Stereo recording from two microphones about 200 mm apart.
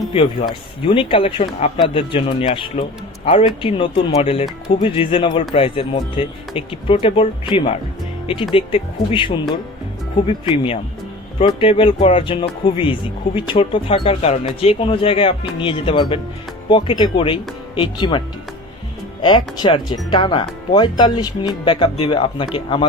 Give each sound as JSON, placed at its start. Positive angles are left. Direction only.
{"t": 0.1, "sound": "speech", "side_deg": 25}
{"t": 19.2, "sound": "speech", "side_deg": 20}